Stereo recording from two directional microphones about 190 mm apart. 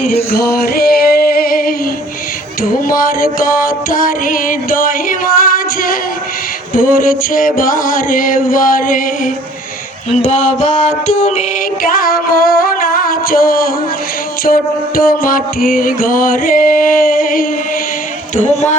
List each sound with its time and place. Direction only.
0.6 s music: 50° left (ahead or behind)
18.3 s speech: 35° left (ahead or behind)